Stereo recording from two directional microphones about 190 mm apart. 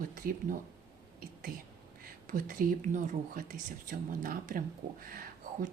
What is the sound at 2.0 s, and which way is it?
Speech, 45° right (ahead or behind).